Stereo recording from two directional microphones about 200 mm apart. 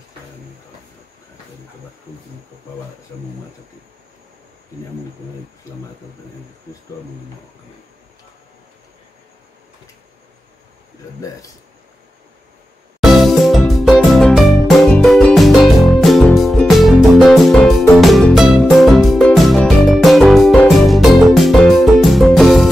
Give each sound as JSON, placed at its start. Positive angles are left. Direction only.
{"t": 13.0, "sound": "music", "side_deg": 0}